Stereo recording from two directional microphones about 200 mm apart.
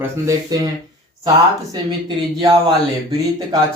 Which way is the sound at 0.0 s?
15° right (ahead or behind).